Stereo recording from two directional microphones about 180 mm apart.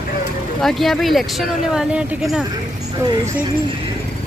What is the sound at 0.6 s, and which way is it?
Speech, centre (ahead or behind).